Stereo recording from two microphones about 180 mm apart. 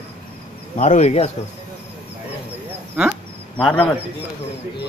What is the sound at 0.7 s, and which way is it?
Speech, 40° left (ahead or behind).